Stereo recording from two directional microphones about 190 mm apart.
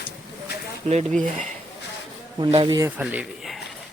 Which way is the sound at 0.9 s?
40° right (ahead or behind).